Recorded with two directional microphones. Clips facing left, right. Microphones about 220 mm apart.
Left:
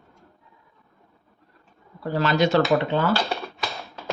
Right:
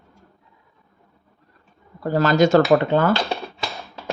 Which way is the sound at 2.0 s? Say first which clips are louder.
Right 5 dB; 45° right (ahead or behind).